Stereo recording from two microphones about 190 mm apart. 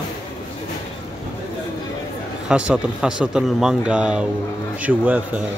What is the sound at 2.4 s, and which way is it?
Speech, 5° right (ahead or behind).